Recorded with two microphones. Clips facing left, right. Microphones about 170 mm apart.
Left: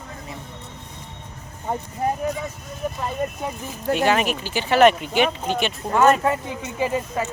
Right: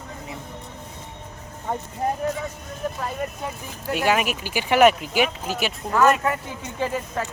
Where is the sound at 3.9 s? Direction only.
10° right (ahead or behind).